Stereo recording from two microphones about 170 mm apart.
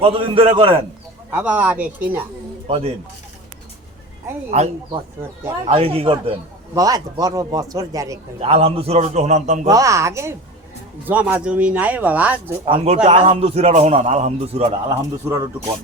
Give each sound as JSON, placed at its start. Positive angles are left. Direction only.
{"t": 0.0, "sound": "a man's voice", "side_deg": -30}
{"t": 1.3, "sound": "speech", "side_deg": -10}
{"t": 2.6, "sound": "speech", "side_deg": -35}
{"t": 4.5, "sound": "a man's voice", "side_deg": -45}
{"t": 6.7, "sound": "a man's voice", "side_deg": -20}
{"t": 8.4, "sound": "a man's voice", "side_deg": -35}
{"t": 9.6, "sound": "speech", "side_deg": -20}
{"t": 12.6, "sound": "a man's voice", "side_deg": -35}
{"t": 14.8, "sound": "a man's voice", "side_deg": -20}